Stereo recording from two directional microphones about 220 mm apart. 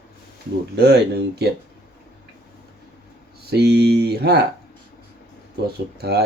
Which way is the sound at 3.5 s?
50° right (ahead or behind).